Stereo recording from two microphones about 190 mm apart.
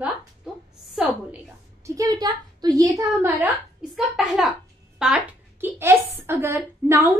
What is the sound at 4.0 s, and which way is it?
A woman's voice, centre (ahead or behind).